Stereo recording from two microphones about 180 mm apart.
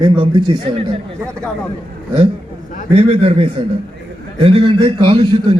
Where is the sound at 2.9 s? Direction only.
35° right (ahead or behind).